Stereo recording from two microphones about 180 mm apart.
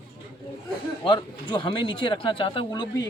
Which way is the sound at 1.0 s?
25° left (ahead or behind).